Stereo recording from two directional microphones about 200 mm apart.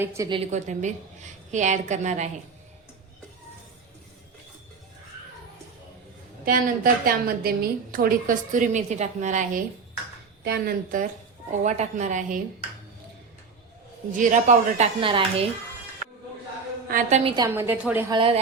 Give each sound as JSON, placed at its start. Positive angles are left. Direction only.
{"t": 0.0, "sound": "a woman's voice", "side_deg": -15}
{"t": 0.3, "sound": "a woman's voice", "side_deg": -35}
{"t": 6.4, "sound": "a woman's voice", "side_deg": -45}
{"t": 14.2, "sound": "a woman's voice", "side_deg": -40}
{"t": 15.0, "sound": "a woman's voice", "side_deg": -25}
{"t": 16.9, "sound": "a woman's voice", "side_deg": -35}
{"t": 17.5, "sound": "a woman's voice", "side_deg": -10}
{"t": 18.1, "sound": "a woman's voice", "side_deg": -25}